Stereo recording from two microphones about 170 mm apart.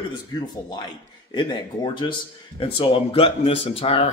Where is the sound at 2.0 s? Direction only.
30° left (ahead or behind).